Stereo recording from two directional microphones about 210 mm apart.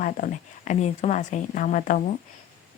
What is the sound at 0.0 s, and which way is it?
Speech, 35° left (ahead or behind).